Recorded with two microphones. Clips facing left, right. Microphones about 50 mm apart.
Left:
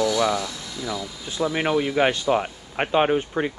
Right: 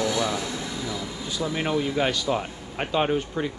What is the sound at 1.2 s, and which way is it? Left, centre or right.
Speech, left.